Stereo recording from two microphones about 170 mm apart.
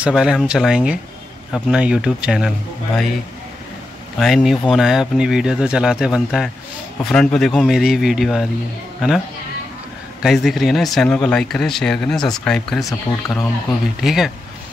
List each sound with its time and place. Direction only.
0.0 s speech: 5° right (ahead or behind)
4.2 s speech: centre (ahead or behind)
10.2 s speech: centre (ahead or behind)
12.8 s speech: 20° left (ahead or behind)
14.0 s speech: centre (ahead or behind)